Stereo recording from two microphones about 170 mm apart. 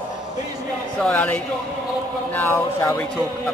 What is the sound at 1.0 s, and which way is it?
Speech, 10° left (ahead or behind).